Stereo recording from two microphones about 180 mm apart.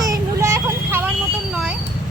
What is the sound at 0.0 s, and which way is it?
Vehicle, 20° right (ahead or behind).